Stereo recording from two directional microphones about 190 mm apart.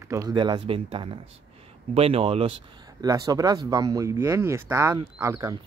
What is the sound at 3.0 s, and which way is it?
Speech, 20° right (ahead or behind).